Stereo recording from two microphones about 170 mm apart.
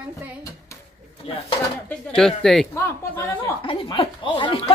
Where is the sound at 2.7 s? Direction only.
15° left (ahead or behind).